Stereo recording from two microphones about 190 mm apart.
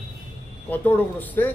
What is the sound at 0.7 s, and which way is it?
Speech, 10° left (ahead or behind).